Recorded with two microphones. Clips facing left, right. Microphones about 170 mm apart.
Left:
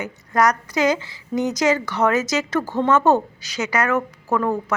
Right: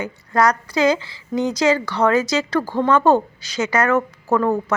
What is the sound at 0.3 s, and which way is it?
A woman's voice, 15° left (ahead or behind).